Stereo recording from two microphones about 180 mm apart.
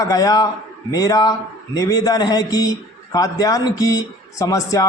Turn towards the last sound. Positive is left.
turn(degrees=20)  # may be behind; listen again after turning